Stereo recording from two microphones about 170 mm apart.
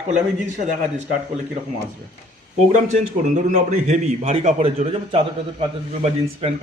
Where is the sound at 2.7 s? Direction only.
45° right (ahead or behind).